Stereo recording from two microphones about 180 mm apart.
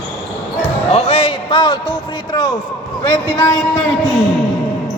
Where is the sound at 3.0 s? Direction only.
25° left (ahead or behind).